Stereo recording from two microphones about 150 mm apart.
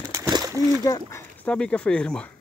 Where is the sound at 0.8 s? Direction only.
20° left (ahead or behind).